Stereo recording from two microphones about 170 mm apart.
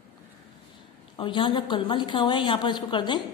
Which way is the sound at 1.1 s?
30° left (ahead or behind).